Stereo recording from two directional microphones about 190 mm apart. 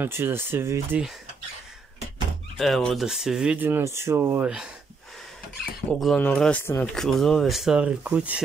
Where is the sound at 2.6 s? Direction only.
Centre (ahead or behind).